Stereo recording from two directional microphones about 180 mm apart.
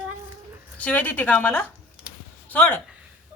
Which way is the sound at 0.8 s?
10° left (ahead or behind).